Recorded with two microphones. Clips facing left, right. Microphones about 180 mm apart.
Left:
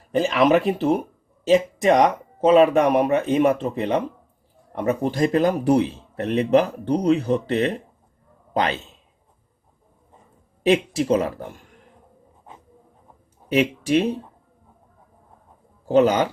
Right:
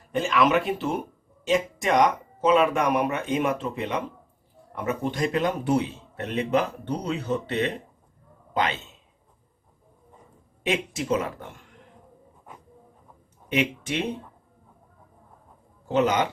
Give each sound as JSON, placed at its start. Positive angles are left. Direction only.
{"t": 0.1, "sound": "a man's voice", "side_deg": 35}
{"t": 10.7, "sound": "speech", "side_deg": 35}
{"t": 13.5, "sound": "speech", "side_deg": 35}
{"t": 15.9, "sound": "speech", "side_deg": 35}